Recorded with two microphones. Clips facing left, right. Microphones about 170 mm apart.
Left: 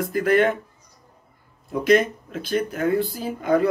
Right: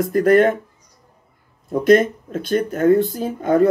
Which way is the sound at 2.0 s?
50° right (ahead or behind).